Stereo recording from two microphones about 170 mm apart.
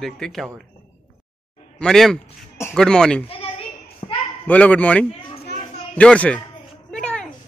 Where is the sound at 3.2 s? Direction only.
35° left (ahead or behind).